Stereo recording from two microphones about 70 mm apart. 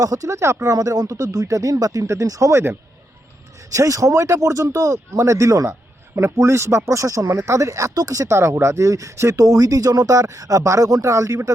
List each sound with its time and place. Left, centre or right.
0.0 s speech: right
0.7 s speech: right
3.7 s speech: right